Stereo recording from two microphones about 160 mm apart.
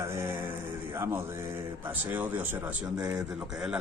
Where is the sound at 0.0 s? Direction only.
15° right (ahead or behind).